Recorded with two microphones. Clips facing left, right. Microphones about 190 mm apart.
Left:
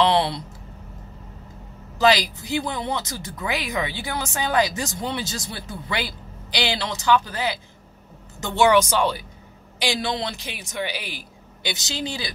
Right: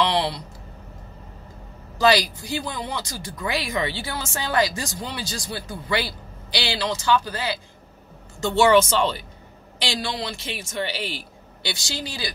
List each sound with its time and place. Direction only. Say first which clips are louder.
2.0 s a man's voice: even; 20° left (ahead or behind)